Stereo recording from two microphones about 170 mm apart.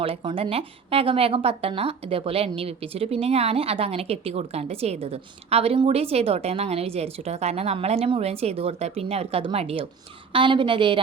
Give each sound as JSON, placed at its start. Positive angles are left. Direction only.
{"t": 0.0, "sound": "a woman's voice", "side_deg": -30}